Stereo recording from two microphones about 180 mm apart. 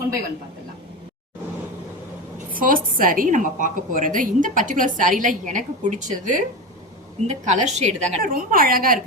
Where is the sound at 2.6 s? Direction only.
50° right (ahead or behind).